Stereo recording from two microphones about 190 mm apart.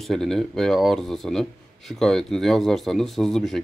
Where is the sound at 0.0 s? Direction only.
Centre (ahead or behind).